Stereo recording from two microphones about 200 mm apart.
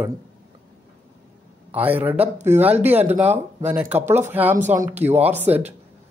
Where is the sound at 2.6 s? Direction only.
10° right (ahead or behind).